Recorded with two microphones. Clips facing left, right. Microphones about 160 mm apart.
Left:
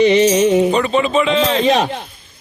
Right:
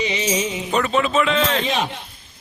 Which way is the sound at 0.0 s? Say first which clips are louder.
Left 11 dB; 60° left (ahead or behind).